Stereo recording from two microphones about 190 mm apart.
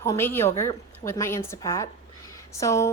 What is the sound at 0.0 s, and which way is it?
A woman's voice, 15° left (ahead or behind).